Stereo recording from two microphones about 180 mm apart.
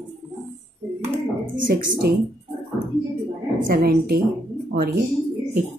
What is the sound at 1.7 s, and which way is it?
Speech, 55° right (ahead or behind).